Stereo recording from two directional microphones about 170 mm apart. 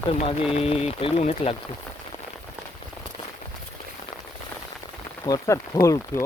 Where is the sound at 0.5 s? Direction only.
35° left (ahead or behind).